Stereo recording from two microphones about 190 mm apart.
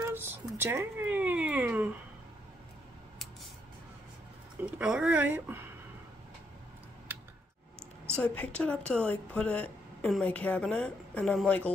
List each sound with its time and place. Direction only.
0.0 s a sound: 10° right (ahead or behind)
4.6 s speech: 5° right (ahead or behind)
8.1 s a woman's voice: 5° left (ahead or behind)